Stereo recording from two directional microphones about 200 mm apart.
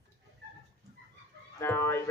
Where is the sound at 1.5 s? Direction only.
10° left (ahead or behind).